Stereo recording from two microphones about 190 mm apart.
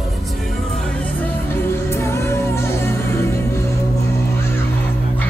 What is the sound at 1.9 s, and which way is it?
Music, 15° left (ahead or behind).